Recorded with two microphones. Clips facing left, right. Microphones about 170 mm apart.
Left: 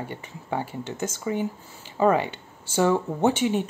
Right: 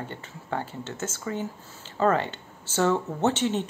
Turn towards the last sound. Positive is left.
turn(degrees=10)  # may be behind; listen again after turning